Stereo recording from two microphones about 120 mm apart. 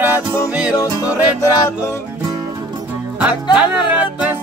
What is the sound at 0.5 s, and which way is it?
Speech, 10° right (ahead or behind).